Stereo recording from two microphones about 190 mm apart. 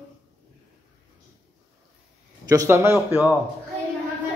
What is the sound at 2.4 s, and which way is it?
Speech, 15° right (ahead or behind).